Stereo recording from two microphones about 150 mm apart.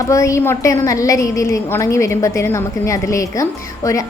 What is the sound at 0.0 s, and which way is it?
A woman's voice, 20° left (ahead or behind).